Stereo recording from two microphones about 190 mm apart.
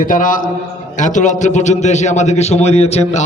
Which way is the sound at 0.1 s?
45° left (ahead or behind).